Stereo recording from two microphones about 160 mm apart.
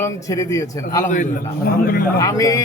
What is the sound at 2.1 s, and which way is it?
Speech, 20° left (ahead or behind).